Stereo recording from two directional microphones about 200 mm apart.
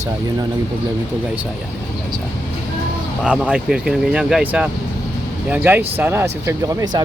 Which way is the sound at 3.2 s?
5° right (ahead or behind).